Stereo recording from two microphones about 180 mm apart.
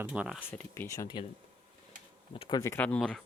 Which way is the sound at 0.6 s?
15° left (ahead or behind).